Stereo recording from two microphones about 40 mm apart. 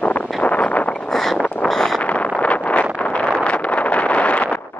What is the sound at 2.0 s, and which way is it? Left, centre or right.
Vehicle, left.